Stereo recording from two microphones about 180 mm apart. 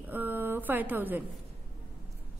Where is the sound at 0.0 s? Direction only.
10° right (ahead or behind).